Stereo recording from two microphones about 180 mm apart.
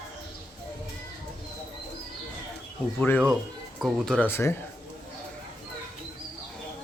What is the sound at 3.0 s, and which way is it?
Speech, 5° left (ahead or behind).